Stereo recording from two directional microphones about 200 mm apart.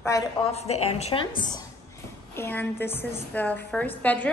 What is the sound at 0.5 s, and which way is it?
Speech, 30° left (ahead or behind).